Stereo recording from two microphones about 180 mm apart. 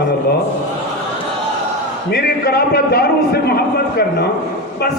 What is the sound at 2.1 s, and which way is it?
A man's voice, 60° left (ahead or behind).